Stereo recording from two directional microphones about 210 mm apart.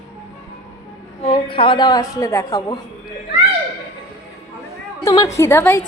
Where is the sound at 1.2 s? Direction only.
25° left (ahead or behind).